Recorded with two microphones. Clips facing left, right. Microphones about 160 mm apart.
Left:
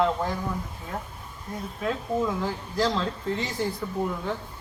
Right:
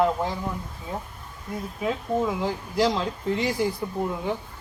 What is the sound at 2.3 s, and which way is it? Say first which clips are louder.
Speech: right 2 dB; 15° right (ahead or behind).